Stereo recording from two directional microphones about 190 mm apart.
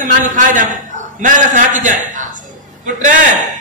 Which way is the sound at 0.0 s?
45° right (ahead or behind).